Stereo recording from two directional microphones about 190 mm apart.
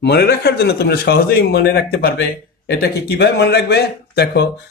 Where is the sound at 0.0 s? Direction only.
60° left (ahead or behind).